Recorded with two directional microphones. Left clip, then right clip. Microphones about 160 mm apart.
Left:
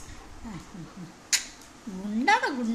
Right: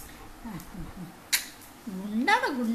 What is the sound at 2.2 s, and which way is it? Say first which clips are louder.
Speech: left 1 dB; 10° left (ahead or behind).